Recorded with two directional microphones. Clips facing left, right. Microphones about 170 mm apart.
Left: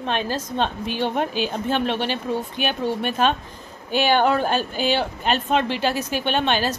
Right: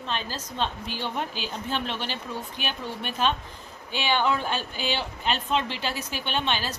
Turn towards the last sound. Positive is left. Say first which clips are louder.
# left 7 dB
turn(degrees=50)  # may be behind; listen again after turning